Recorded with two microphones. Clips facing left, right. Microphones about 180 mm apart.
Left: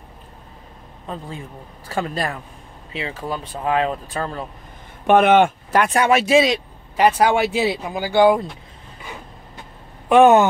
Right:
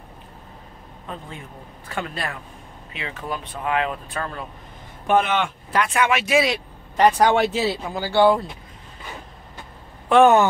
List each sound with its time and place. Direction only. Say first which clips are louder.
1.9 s speech: left 5 dB; 35° left (ahead or behind)
5.0 s speech: left 7 dB; 60° left (ahead or behind); by 6.6 s 25° left (ahead or behind)
7.0 s speech: even; 10° left (ahead or behind)
10.0 s speech: left 2 dB; 15° left (ahead or behind)